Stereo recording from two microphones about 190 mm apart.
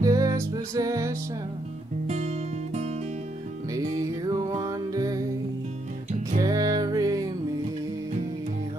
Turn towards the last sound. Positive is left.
turn(degrees=-20)  # may be behind; listen again after turning